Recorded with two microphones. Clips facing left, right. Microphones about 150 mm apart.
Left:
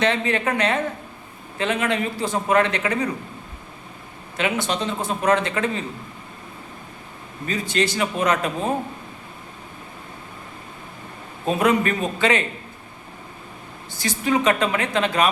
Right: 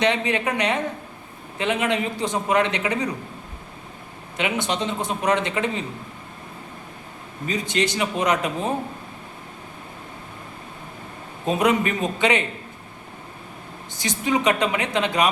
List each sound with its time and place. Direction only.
0.0 s a man's voice: 15° right (ahead or behind)
4.4 s a man's voice: 20° right (ahead or behind)
7.4 s a man's voice: 20° right (ahead or behind)
11.4 s a man's voice: 20° right (ahead or behind)
13.9 s a man's voice: 20° right (ahead or behind)